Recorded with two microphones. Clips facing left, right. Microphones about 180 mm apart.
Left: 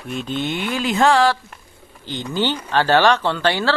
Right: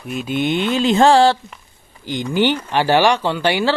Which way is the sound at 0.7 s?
25° right (ahead or behind).